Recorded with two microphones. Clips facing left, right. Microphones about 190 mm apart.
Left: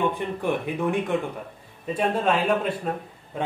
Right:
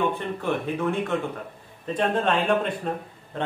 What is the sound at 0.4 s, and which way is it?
Speech, 15° left (ahead or behind).